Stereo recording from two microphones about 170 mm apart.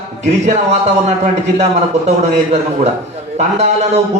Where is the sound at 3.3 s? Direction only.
40° right (ahead or behind).